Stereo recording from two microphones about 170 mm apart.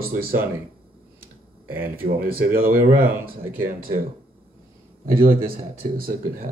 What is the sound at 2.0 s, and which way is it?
Speech, 55° right (ahead or behind).